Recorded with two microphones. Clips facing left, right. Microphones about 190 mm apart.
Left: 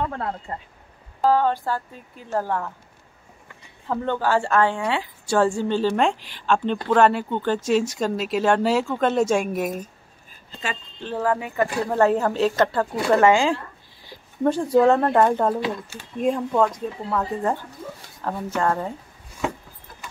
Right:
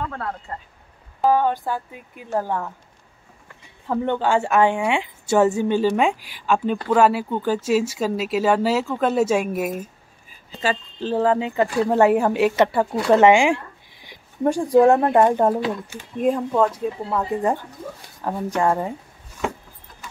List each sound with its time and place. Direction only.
0.5 s speech: 25° left (ahead or behind)
1.2 s speech: 15° right (ahead or behind)
3.9 s speech: 20° right (ahead or behind)
10.6 s speech: 35° right (ahead or behind); by 16.1 s 20° right (ahead or behind)
16.2 s speech: 5° right (ahead or behind)